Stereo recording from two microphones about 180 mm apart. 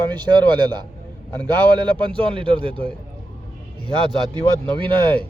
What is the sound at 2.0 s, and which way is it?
Speech, 30° right (ahead or behind).